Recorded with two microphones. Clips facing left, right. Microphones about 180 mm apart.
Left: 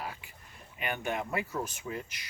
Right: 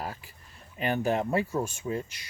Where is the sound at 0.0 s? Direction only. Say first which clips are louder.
Right 4 dB; 40° right (ahead or behind).